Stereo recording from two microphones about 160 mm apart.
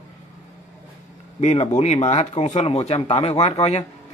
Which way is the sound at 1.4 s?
45° left (ahead or behind).